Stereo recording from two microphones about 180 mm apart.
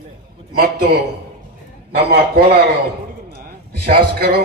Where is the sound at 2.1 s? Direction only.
65° right (ahead or behind).